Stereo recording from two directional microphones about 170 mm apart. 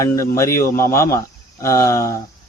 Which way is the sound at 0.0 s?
15° left (ahead or behind).